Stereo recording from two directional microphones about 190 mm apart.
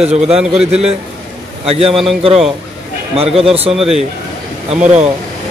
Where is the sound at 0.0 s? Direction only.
35° right (ahead or behind).